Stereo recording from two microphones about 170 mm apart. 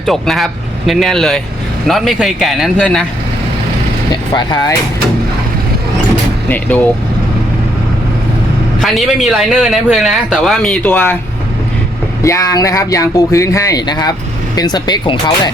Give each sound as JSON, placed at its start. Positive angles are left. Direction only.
{"t": 0.0, "sound": "a man's voice", "side_deg": 0}
{"t": 4.4, "sound": "speech", "side_deg": 25}
{"t": 6.5, "sound": "speech", "side_deg": 10}
{"t": 8.8, "sound": "a man's voice", "side_deg": 0}
{"t": 12.2, "sound": "speech", "side_deg": 20}